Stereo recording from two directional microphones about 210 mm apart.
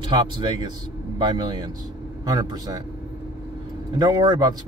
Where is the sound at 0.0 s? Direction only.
20° right (ahead or behind).